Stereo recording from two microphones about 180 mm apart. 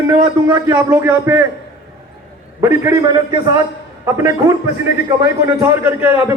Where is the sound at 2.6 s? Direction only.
20° right (ahead or behind).